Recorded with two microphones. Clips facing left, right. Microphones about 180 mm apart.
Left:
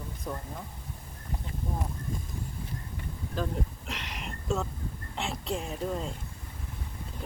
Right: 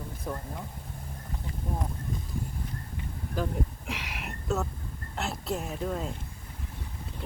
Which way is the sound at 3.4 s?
10° right (ahead or behind).